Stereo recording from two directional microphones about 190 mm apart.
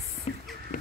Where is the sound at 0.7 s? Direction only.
45° left (ahead or behind).